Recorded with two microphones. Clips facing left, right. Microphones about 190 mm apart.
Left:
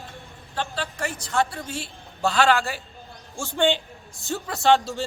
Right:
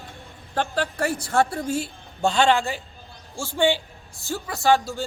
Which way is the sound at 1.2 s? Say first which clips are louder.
Right 1 dB; 55° right (ahead or behind).